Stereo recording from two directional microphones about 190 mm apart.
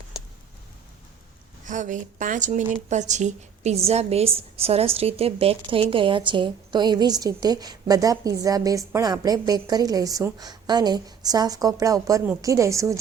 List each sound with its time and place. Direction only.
1.6 s a woman's voice: 40° right (ahead or behind); by 13.0 s 15° right (ahead or behind)